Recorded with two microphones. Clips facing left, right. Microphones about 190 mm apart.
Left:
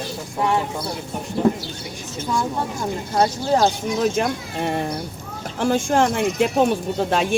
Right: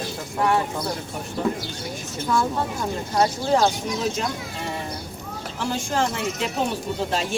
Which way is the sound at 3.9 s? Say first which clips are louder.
Left 5 dB; 55° left (ahead or behind).